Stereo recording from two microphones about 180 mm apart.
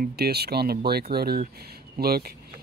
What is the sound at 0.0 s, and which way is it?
Speech, 60° right (ahead or behind).